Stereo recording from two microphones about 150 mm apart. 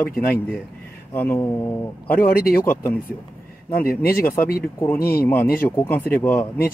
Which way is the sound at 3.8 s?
90° left.